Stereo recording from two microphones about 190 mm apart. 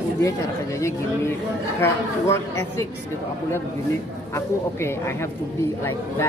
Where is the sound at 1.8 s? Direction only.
15° left (ahead or behind).